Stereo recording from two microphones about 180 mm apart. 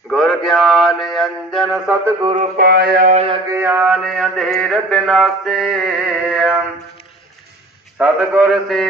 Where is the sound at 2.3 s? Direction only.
50° right (ahead or behind).